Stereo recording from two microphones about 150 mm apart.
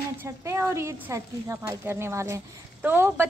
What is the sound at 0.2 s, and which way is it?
A woman's voice, 20° right (ahead or behind).